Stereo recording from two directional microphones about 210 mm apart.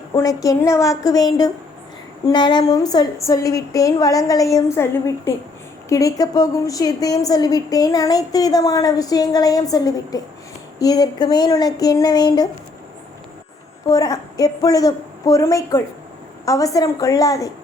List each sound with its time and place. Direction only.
0.1 s a woman's voice: 15° left (ahead or behind)
13.8 s a woman's voice: 15° left (ahead or behind)